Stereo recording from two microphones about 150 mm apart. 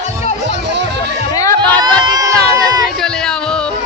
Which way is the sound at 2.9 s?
5° left (ahead or behind).